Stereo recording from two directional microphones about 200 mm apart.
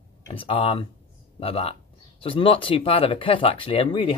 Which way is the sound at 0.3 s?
30° left (ahead or behind).